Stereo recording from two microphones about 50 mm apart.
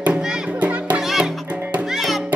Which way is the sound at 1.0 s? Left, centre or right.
Centre.